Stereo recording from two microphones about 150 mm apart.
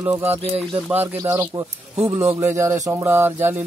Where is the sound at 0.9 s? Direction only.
15° right (ahead or behind).